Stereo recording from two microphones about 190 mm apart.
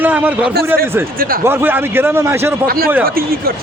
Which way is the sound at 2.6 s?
50° right (ahead or behind).